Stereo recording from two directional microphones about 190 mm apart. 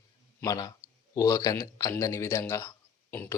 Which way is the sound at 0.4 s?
20° left (ahead or behind).